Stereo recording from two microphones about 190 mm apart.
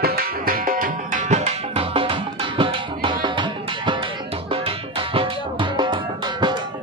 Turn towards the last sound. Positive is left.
turn(degrees=-25)  # may be behind; listen again after turning